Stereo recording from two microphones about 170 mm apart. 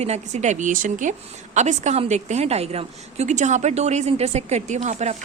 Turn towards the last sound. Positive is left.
turn(degrees=-40)  # may be behind; listen again after turning